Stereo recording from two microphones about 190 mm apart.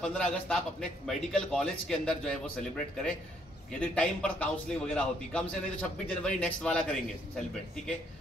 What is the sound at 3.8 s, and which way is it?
A man's voice, 5° left (ahead or behind).